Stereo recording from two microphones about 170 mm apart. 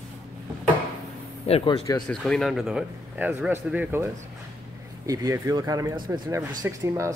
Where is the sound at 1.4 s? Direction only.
35° left (ahead or behind).